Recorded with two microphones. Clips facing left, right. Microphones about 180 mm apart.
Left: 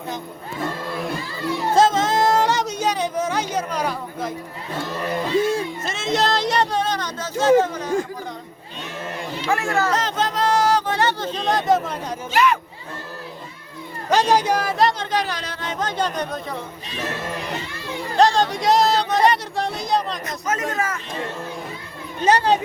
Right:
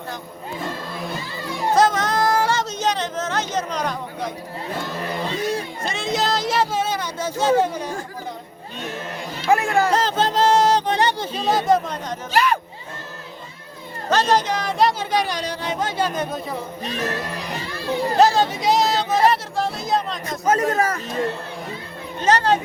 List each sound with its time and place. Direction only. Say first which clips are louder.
1.7 s music: left 1 dB; 25° left (ahead or behind); by 4.4 s 5° left (ahead or behind)
5.4 s music: left 4 dB; 25° left (ahead or behind)
5.8 s a sound: right 1 dB; centre (ahead or behind)
7.6 s speech: right 1 dB; 10° right (ahead or behind)
9.5 s speech: right 4 dB; 15° right (ahead or behind)
9.9 s speech: right 3 dB; 30° right (ahead or behind); by 12.1 s 5° left (ahead or behind)
12.3 s speech: left 1 dB; 35° right (ahead or behind)
14.1 s speech: left 1 dB; 10° left (ahead or behind)
15.1 s speech: right 2 dB; 15° right (ahead or behind)
17.7 s speech: right 6 dB; 35° right (ahead or behind)
18.2 s a sound: left 1 dB; 5° right (ahead or behind)
20.4 s speech: right 6 dB; 35° right (ahead or behind)
22.2 s speech: left 1 dB; 15° left (ahead or behind)